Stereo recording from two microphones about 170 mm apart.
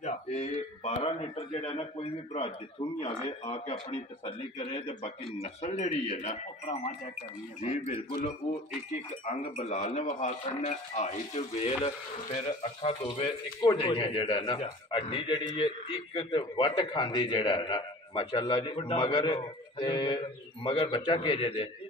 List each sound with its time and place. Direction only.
0.0 s speech: 40° left (ahead or behind)
7.6 s speech: 45° left (ahead or behind)
9.2 s a man's voice: 40° left (ahead or behind)